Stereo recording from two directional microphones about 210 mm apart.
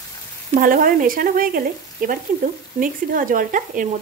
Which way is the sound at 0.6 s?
40° right (ahead or behind).